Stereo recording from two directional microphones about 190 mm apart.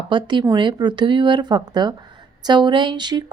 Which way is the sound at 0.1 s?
25° right (ahead or behind).